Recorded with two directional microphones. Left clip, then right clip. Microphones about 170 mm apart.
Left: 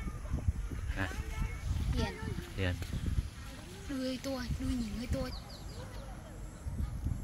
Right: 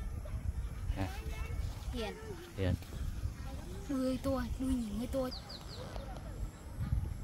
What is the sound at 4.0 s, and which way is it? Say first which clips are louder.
Speech: right 2 dB; 70° right (ahead or behind).